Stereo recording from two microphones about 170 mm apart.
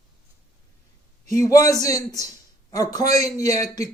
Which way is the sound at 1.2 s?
20° left (ahead or behind).